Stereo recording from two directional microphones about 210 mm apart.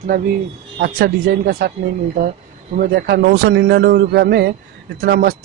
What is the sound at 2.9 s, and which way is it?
Speech, 50° right (ahead or behind).